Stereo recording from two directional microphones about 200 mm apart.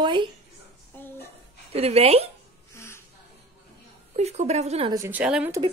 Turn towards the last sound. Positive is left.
turn(degrees=-5)  # may be behind; listen again after turning